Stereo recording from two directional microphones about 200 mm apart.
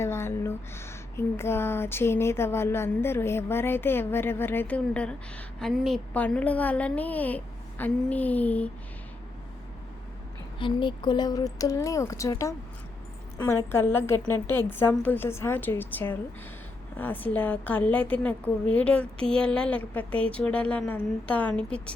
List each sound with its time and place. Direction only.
0.0 s speech: 15° left (ahead or behind)
10.6 s speech: 25° left (ahead or behind)
13.7 s speech: 10° left (ahead or behind)